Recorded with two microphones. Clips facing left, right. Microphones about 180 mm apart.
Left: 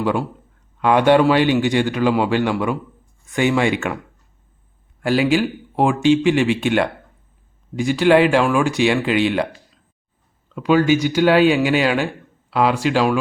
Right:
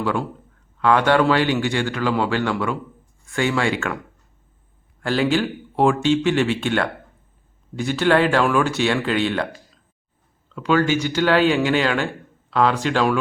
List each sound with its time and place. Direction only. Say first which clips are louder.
0.0 s a man's voice: left 3 dB; 15° left (ahead or behind)
5.0 s speech: left 3 dB; 10° left (ahead or behind)
10.5 s speech: left 3 dB; 15° left (ahead or behind)